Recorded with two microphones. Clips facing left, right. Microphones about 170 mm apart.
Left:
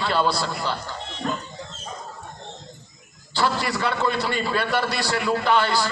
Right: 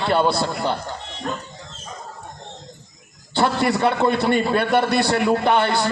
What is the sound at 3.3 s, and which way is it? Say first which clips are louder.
A man's voice: right 5 dB; 55° right (ahead or behind).